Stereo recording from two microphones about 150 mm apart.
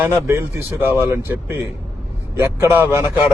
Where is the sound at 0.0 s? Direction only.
15° right (ahead or behind).